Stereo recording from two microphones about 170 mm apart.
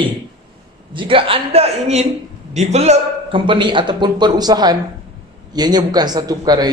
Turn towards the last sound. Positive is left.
turn(degrees=-25)  # may be behind; listen again after turning